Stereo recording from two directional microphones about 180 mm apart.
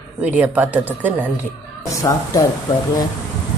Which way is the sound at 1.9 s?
20° left (ahead or behind).